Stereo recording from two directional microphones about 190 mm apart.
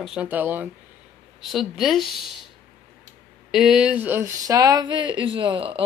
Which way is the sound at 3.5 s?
Centre (ahead or behind).